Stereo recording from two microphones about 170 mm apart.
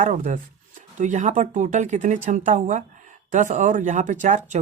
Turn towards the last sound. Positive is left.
turn(degrees=-45)  # may be behind; listen again after turning